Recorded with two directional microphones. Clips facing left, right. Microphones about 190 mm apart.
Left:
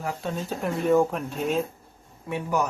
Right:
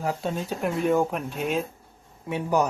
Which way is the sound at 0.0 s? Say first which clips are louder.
Right 3 dB; 25° right (ahead or behind).